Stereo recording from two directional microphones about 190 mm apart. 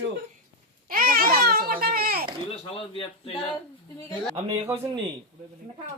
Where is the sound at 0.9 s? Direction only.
50° right (ahead or behind).